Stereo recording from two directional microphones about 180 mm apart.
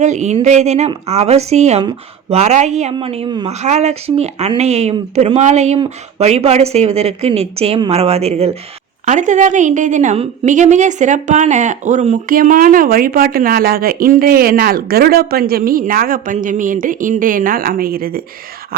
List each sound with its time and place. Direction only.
0.0 s a woman's voice: 40° right (ahead or behind)